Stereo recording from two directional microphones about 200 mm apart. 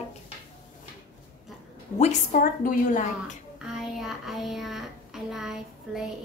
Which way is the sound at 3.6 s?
Centre (ahead or behind).